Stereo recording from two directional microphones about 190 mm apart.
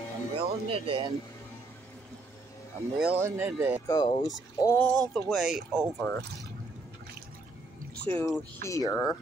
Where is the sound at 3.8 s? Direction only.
20° left (ahead or behind).